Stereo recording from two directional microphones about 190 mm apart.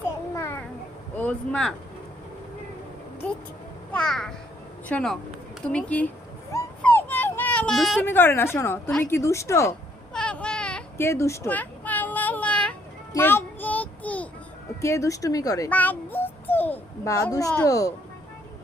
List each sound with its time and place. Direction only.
0.3 s a sound: 15° left (ahead or behind)
1.1 s speech: 5° left (ahead or behind)
3.9 s a child's voice: centre (ahead or behind)
6.5 s a sound: 10° left (ahead or behind)
8.0 s speech: 10° left (ahead or behind)
10.1 s baby cry: 5° left (ahead or behind)
13.1 s child singing: 10° left (ahead or behind)
14.8 s a child's voice: 15° left (ahead or behind)